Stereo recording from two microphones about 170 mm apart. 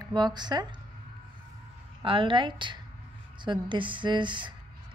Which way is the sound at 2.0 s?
30° right (ahead or behind).